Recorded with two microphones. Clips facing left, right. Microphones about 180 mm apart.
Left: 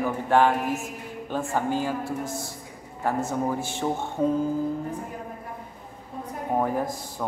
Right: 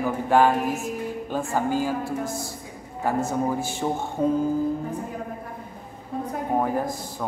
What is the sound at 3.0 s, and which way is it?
Speech, 5° right (ahead or behind).